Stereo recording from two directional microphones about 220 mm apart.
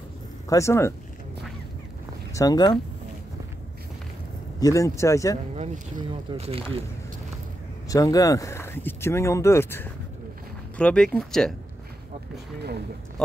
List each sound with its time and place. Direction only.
0.5 s speech: 15° left (ahead or behind)
2.3 s speech: 15° left (ahead or behind)
4.6 s speech: 15° left (ahead or behind)
5.6 s speech: 30° right (ahead or behind)
7.9 s speech: 15° left (ahead or behind)